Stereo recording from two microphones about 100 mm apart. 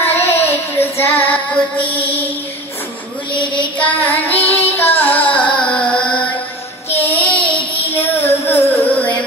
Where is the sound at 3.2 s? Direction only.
55° left (ahead or behind).